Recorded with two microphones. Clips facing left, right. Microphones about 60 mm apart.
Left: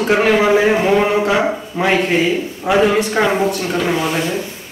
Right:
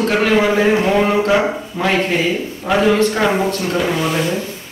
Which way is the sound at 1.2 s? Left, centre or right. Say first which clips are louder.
Right 1 dB; centre.